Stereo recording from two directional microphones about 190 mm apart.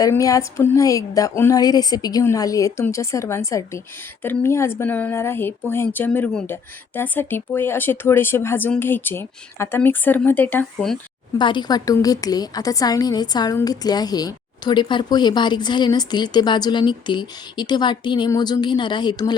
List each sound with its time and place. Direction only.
0.0 s speech: 20° left (ahead or behind)
11.3 s a woman's voice: 25° left (ahead or behind)